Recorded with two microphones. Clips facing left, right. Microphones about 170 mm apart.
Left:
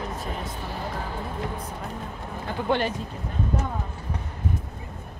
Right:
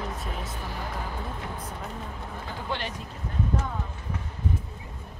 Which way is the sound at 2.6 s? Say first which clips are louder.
Left 9 dB; 55° left (ahead or behind).